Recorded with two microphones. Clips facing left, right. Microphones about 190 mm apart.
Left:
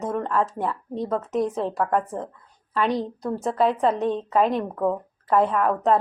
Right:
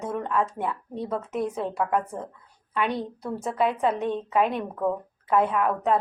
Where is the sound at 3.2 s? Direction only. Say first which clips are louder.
Left 3 dB; 40° left (ahead or behind).